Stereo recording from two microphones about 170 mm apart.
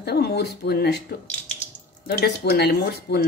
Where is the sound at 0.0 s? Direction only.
70° left (ahead or behind).